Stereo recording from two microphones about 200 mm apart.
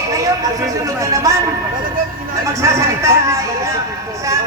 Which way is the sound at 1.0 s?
15° right (ahead or behind).